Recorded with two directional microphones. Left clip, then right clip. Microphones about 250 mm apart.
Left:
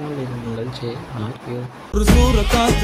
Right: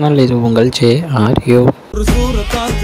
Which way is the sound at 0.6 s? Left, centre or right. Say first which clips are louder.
Right 18 dB; right.